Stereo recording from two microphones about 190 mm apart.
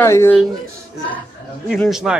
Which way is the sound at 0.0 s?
15° left (ahead or behind).